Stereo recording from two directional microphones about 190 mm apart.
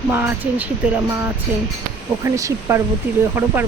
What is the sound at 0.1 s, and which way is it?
Speech, 10° right (ahead or behind).